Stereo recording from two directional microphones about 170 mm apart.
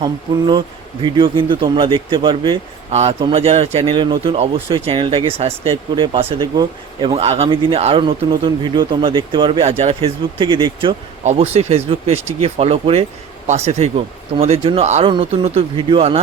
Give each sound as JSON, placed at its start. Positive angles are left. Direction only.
{"t": 0.0, "sound": "speech", "side_deg": -25}